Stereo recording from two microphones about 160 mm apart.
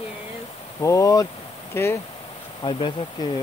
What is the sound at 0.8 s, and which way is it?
Speech, 20° left (ahead or behind).